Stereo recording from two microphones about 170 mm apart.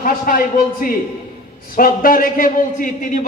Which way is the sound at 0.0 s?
55° left (ahead or behind).